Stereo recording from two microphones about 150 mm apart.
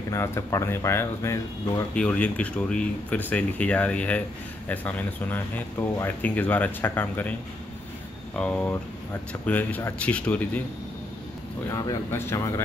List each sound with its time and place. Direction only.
0.1 s speech: 15° left (ahead or behind)
2.0 s speech: 10° left (ahead or behind)
8.4 s speech: 10° left (ahead or behind)
11.7 s speech: 20° left (ahead or behind)